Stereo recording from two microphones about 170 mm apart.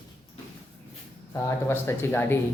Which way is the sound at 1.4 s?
15° left (ahead or behind).